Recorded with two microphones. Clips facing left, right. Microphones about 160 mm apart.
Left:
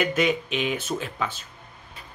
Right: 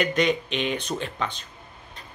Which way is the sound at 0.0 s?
5° left (ahead or behind).